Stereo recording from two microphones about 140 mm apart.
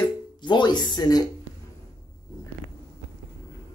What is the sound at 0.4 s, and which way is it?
Speech, 35° left (ahead or behind).